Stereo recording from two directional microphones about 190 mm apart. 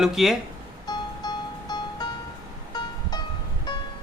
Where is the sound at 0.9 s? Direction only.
20° left (ahead or behind).